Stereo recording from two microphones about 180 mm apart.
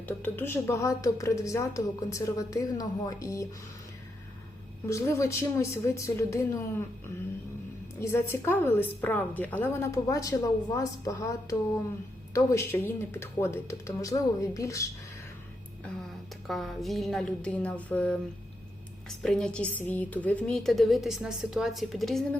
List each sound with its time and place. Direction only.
0.0 s a woman's voice: 10° left (ahead or behind)
4.9 s a woman's voice: 15° left (ahead or behind)
8.1 s a woman's voice: 15° left (ahead or behind)
16.5 s a woman's voice: centre (ahead or behind)